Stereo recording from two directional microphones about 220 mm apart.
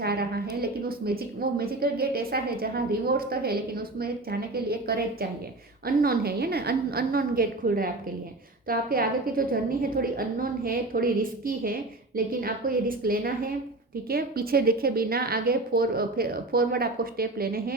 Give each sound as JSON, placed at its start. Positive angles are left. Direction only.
{"t": 0.0, "sound": "a woman's voice", "side_deg": -45}